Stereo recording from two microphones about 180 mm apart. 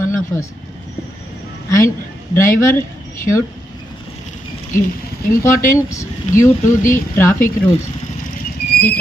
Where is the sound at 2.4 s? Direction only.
15° left (ahead or behind).